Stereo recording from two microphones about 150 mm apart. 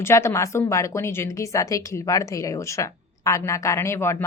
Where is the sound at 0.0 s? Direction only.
20° left (ahead or behind).